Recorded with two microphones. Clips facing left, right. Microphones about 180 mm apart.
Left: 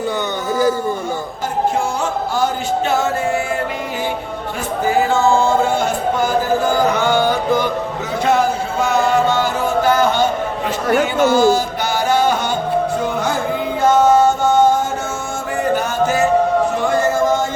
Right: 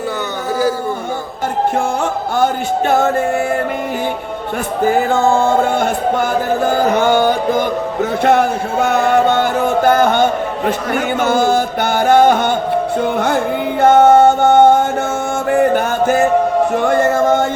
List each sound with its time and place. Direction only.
2.3 s a sound: 55° right (ahead or behind)
4.8 s music: 50° right (ahead or behind)
8.2 s a sound: 60° right (ahead or behind)
11.2 s music: 55° right (ahead or behind)
13.8 s mantra: 60° right (ahead or behind)
15.4 s music: 55° right (ahead or behind)